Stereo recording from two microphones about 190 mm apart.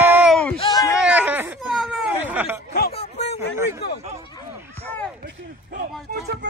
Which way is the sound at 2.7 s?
55° left (ahead or behind).